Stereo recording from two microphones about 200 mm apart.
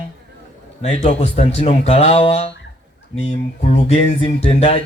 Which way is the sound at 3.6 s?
30° left (ahead or behind).